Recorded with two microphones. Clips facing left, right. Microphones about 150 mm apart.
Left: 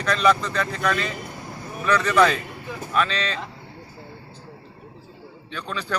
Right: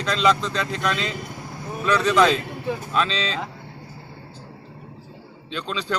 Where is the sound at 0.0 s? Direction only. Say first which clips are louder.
Even; 20° right (ahead or behind).